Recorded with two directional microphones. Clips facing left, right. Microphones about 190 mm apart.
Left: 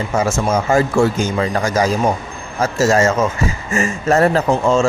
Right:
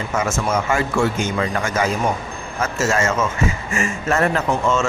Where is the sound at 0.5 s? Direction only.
35° left (ahead or behind).